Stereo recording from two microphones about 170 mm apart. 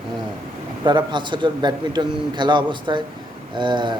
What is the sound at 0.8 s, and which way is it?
A man's voice, 25° right (ahead or behind).